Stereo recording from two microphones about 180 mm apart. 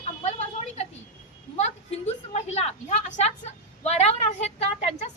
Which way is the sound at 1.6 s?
40° left (ahead or behind).